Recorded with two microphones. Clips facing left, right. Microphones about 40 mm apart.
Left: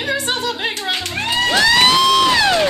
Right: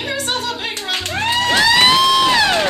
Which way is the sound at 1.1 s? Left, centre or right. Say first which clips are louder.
Right 2 dB; right.